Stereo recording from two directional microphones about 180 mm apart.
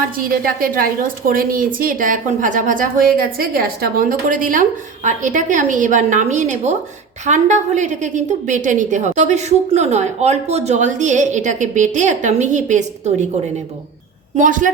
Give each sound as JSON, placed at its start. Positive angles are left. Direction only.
{"t": 0.2, "sound": "a woman's voice", "side_deg": -50}
{"t": 14.3, "sound": "a woman's voice", "side_deg": -45}